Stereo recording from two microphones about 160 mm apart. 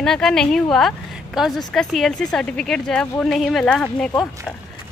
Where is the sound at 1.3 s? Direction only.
Centre (ahead or behind).